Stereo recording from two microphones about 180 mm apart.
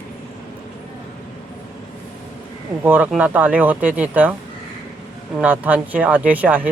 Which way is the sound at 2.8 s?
10° right (ahead or behind).